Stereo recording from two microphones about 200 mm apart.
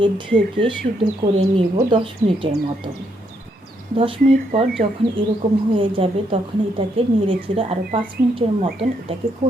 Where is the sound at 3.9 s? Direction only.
25° right (ahead or behind).